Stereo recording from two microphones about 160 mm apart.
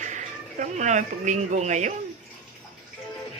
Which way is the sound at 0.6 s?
50° right (ahead or behind).